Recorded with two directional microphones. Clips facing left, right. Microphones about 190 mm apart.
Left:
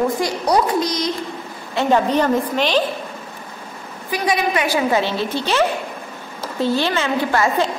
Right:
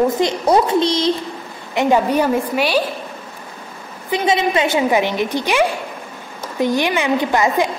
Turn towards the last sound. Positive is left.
turn(degrees=-15)  # may be behind; listen again after turning